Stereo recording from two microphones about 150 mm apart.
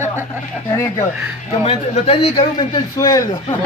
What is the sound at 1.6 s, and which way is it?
A man's voice, 45° left (ahead or behind).